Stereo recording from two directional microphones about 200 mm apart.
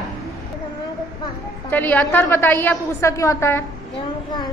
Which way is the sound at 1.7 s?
10° left (ahead or behind).